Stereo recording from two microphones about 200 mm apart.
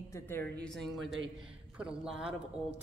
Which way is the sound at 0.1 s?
10° left (ahead or behind).